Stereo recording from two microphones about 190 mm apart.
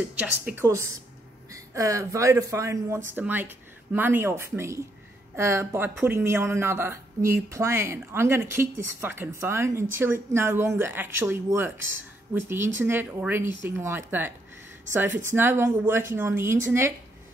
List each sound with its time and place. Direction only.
0.2 s a woman's voice: 10° right (ahead or behind)